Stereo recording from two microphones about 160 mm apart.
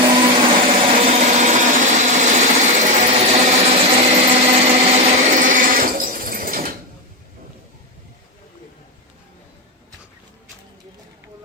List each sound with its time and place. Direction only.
0.0 s sewing machine: 30° right (ahead or behind)
4.3 s blender: 45° right (ahead or behind); by 6.7 s 65° right (ahead or behind)